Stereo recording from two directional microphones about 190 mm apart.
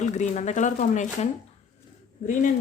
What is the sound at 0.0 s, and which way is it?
Speech, 40° left (ahead or behind).